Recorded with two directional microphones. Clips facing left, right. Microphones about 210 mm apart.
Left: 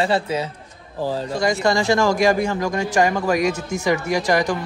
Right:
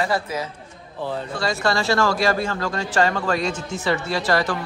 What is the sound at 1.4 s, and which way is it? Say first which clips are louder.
A man's voice: left 4 dB; 15° left (ahead or behind).